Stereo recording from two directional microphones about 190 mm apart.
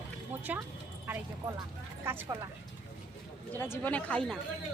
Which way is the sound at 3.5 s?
10° left (ahead or behind).